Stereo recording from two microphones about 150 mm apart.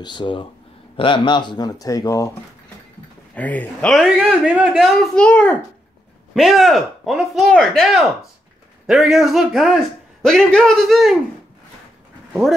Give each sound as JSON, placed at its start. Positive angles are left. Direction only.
{"t": 0.0, "sound": "speech", "side_deg": 30}
{"t": 3.3, "sound": "a man's voice", "side_deg": 10}
{"t": 5.2, "sound": "a child's voice", "side_deg": 10}